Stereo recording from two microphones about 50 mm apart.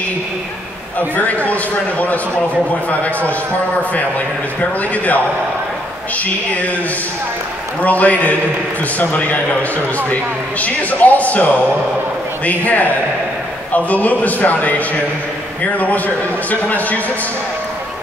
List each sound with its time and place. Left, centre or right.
0.9 s a man's voice: left
4.6 s a man's voice: left
7.8 s a man's voice: left
10.6 s a man's voice: left